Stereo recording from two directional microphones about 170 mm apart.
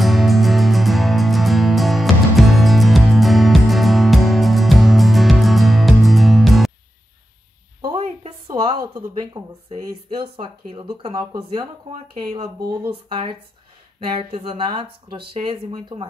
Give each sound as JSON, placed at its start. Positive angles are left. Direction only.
{"t": 0.0, "sound": "music", "side_deg": 0}
{"t": 7.8, "sound": "a sound", "side_deg": -35}
{"t": 8.9, "sound": "speech", "side_deg": -20}
{"t": 11.1, "sound": "speech", "side_deg": -25}